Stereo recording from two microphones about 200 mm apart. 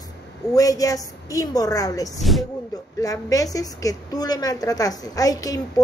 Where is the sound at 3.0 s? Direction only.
15° left (ahead or behind).